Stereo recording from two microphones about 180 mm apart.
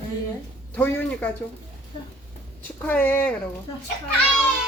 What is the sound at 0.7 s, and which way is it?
Speech, 10° left (ahead or behind).